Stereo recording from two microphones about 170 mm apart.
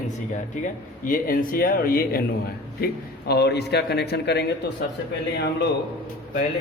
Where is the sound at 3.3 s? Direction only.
75° left (ahead or behind).